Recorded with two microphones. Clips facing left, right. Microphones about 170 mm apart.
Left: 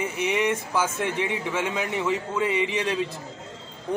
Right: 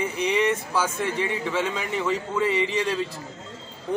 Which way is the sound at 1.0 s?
15° left (ahead or behind).